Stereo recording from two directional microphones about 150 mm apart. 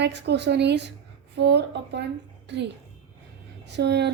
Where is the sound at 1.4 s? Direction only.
90° right.